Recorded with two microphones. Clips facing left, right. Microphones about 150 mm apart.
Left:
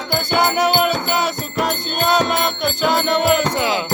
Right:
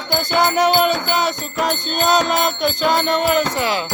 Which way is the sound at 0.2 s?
10° left (ahead or behind).